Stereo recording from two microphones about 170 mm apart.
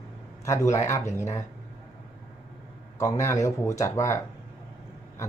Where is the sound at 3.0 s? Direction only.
15° left (ahead or behind).